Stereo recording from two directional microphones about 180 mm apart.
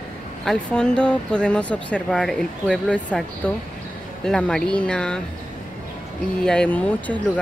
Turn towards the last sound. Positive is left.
turn(degrees=10)  # may be behind; listen again after turning